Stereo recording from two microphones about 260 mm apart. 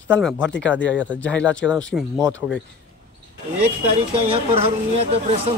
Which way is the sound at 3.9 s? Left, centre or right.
Right.